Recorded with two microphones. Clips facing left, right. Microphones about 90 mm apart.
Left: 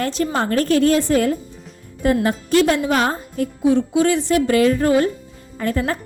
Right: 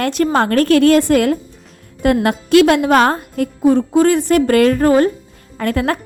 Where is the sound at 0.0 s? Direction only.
60° right (ahead or behind).